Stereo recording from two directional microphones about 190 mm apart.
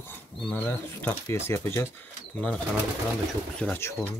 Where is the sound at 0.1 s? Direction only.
10° left (ahead or behind).